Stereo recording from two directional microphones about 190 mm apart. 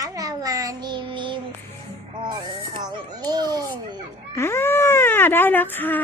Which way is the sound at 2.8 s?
20° right (ahead or behind).